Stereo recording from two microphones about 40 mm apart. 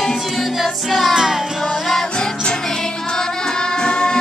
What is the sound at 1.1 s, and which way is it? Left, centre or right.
Music, centre.